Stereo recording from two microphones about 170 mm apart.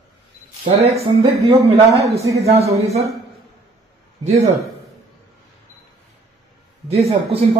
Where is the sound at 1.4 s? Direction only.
35° right (ahead or behind).